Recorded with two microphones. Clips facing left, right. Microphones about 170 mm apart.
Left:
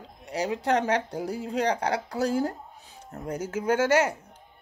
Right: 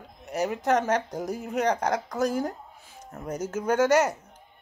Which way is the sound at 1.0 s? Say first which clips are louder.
Even; 10° left (ahead or behind).